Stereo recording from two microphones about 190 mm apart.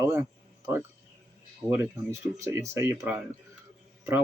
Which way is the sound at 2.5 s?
15° right (ahead or behind).